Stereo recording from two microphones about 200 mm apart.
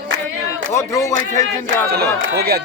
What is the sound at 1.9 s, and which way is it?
Speech, 50° right (ahead or behind).